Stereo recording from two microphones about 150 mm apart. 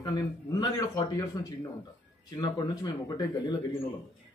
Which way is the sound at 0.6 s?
25° left (ahead or behind).